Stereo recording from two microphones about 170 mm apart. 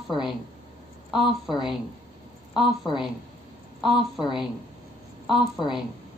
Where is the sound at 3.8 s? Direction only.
Centre (ahead or behind).